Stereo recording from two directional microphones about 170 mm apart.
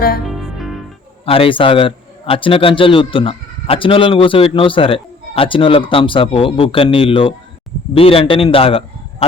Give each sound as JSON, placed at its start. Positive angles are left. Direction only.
{"t": 0.3, "sound": "music", "side_deg": 0}
{"t": 1.2, "sound": "a man's voice", "side_deg": 35}